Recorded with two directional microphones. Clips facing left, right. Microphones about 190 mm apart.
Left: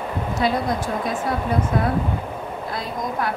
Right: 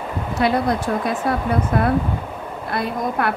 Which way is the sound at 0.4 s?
65° right (ahead or behind).